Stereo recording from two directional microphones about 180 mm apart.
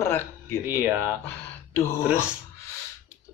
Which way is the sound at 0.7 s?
10° right (ahead or behind).